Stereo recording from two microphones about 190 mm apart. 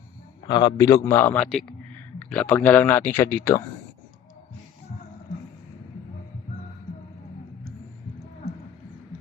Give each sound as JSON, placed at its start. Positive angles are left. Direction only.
{"t": 0.4, "sound": "a man's voice", "side_deg": 25}
{"t": 1.0, "sound": "speech", "side_deg": 10}